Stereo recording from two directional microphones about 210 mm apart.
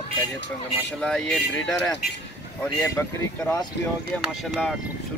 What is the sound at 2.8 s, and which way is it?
Speech, 10° left (ahead or behind).